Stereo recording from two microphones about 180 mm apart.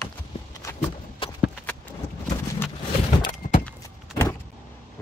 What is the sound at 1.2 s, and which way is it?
Horse, 30° left (ahead or behind).